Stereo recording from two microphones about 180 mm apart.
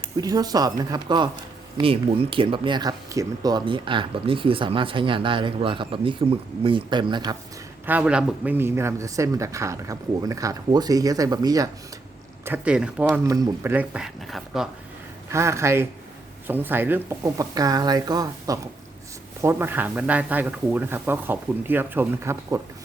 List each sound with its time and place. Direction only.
0.2 s speech: 20° right (ahead or behind)
7.9 s speech: 10° right (ahead or behind)
12.5 s speech: 5° right (ahead or behind)
15.3 s speech: 15° right (ahead or behind)